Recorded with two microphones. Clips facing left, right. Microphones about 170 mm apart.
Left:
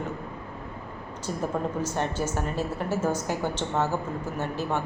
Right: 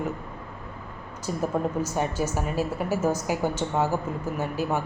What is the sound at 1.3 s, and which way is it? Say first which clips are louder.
A woman's voice: right 2 dB; 5° right (ahead or behind).